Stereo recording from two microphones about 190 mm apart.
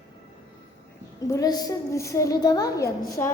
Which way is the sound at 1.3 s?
20° left (ahead or behind).